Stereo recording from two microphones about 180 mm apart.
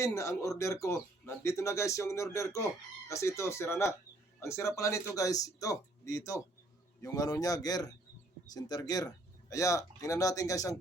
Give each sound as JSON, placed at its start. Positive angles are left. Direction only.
{"t": 0.0, "sound": "a man's voice", "side_deg": 15}